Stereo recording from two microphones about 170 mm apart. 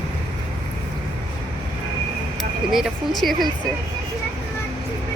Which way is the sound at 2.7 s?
Centre (ahead or behind).